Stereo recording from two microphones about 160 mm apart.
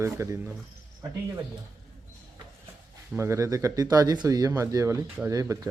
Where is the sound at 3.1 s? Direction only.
15° right (ahead or behind).